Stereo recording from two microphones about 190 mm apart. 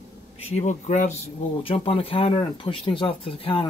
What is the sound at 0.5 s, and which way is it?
Speech, 35° left (ahead or behind).